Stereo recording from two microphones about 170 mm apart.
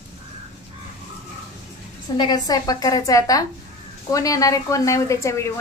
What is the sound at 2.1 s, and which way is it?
A woman's voice, 25° left (ahead or behind).